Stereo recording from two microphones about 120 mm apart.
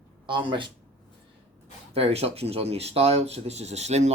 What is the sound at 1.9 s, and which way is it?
Speech, 55° right (ahead or behind).